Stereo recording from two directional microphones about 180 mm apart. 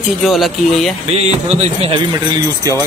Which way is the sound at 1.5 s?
35° right (ahead or behind).